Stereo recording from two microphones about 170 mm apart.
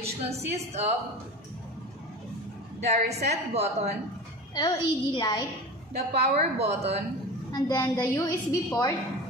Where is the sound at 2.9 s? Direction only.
75° right (ahead or behind).